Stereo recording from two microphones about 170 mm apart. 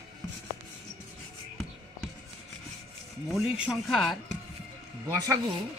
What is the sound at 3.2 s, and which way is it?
Speech, centre (ahead or behind).